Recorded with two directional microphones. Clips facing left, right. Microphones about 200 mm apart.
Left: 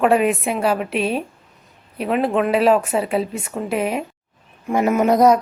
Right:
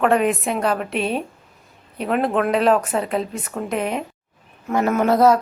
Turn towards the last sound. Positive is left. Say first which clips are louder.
# left 1 dB
turn(degrees=15)  # may be behind; listen again after turning